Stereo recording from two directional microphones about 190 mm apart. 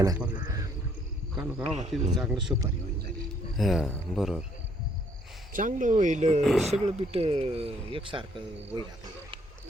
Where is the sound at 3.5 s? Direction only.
Centre (ahead or behind).